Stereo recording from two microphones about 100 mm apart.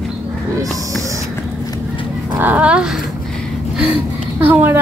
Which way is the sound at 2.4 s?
15° right (ahead or behind).